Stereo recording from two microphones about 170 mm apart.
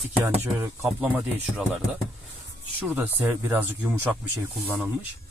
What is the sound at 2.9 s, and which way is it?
Speech, 10° right (ahead or behind).